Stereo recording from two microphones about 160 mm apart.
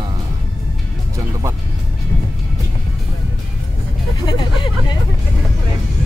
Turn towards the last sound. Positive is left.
turn(degrees=30)  # may be behind; listen again after turning